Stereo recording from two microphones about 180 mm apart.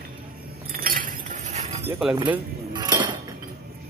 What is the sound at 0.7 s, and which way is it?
Chink, 55° right (ahead or behind).